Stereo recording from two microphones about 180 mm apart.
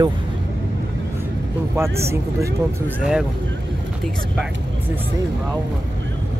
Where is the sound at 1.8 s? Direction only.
15° right (ahead or behind).